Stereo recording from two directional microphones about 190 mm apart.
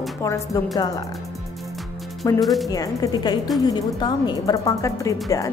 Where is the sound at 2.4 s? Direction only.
Centre (ahead or behind).